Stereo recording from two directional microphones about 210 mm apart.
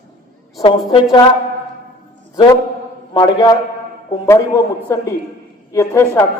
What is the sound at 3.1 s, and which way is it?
A woman's voice, 20° left (ahead or behind).